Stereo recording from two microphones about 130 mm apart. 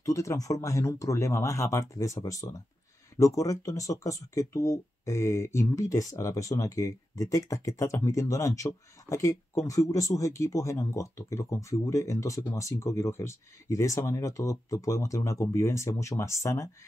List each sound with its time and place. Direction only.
0.0 s speech: 25° left (ahead or behind)